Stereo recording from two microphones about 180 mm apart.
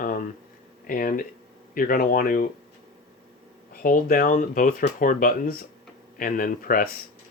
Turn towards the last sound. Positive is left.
turn(degrees=50)  # may be behind; listen again after turning